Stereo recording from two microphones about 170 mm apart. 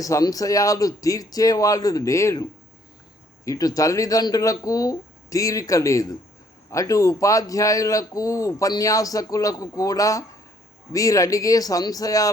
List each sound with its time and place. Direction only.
0.0 s a man's voice: 20° left (ahead or behind)